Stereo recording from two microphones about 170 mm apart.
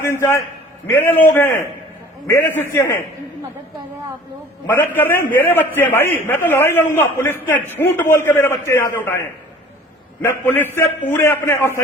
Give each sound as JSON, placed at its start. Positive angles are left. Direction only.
{"t": 0.0, "sound": "a man's voice", "side_deg": 15}
{"t": 4.6, "sound": "a man's voice", "side_deg": 10}